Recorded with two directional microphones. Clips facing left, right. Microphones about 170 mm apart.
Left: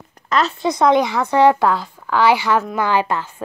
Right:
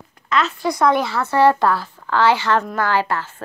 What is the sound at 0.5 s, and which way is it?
A woman's voice, 20° left (ahead or behind).